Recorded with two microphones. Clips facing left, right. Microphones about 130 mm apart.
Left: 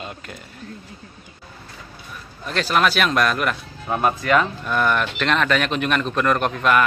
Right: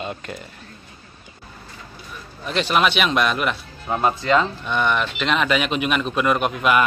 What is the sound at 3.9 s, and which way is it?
Speech, 20° right (ahead or behind).